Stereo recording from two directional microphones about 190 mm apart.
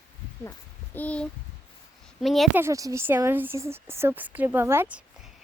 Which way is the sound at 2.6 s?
15° right (ahead or behind).